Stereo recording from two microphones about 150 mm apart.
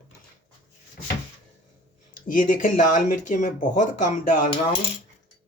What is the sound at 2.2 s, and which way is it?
Speech, 65° left (ahead or behind).